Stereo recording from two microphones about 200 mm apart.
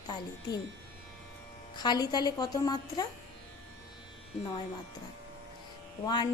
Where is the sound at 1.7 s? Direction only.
20° left (ahead or behind).